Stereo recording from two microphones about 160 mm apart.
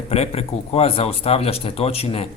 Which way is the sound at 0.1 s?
40° left (ahead or behind).